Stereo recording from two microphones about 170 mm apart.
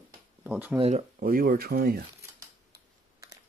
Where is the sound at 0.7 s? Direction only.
35° right (ahead or behind).